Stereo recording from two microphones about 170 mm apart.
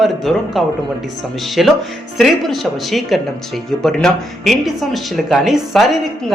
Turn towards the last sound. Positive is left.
turn(degrees=0)  # may be behind; listen again after turning